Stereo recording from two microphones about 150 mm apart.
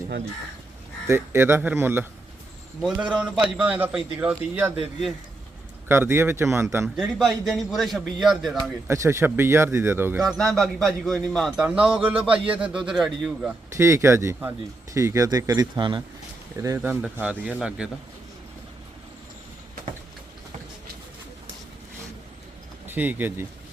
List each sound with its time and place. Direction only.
1.0 s speech: 15° right (ahead or behind)
3.6 s speech: 10° right (ahead or behind)
5.9 s speech: 15° right (ahead or behind)
6.8 s speech: centre (ahead or behind)
8.9 s speech: 20° right (ahead or behind)
10.2 s speech: centre (ahead or behind)
13.7 s speech: 20° right (ahead or behind)
16.6 s speech: 20° right (ahead or behind)
22.9 s speech: 10° right (ahead or behind)